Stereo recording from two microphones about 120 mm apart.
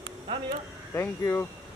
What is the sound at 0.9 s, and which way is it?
Speech, 20° left (ahead or behind).